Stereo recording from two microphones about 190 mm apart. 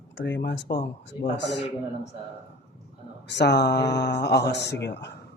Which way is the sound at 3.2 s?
65° left (ahead or behind).